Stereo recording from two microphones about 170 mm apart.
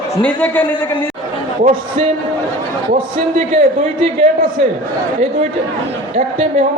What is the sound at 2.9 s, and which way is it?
A man's voice, 45° right (ahead or behind).